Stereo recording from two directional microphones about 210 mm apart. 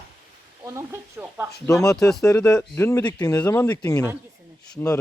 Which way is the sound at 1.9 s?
Centre (ahead or behind).